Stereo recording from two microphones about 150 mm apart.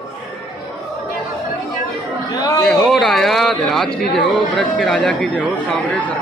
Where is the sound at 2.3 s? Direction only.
25° left (ahead or behind).